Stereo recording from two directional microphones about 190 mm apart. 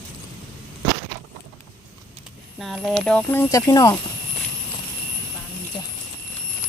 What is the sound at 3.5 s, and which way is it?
Speech, 15° left (ahead or behind).